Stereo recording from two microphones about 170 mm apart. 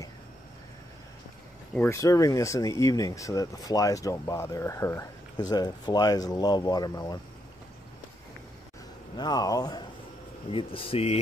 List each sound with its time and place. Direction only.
1.8 s speech: 15° left (ahead or behind)
9.1 s speech: 25° left (ahead or behind)